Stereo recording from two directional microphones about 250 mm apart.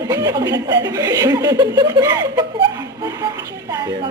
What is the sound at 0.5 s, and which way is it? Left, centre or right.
Speech, right.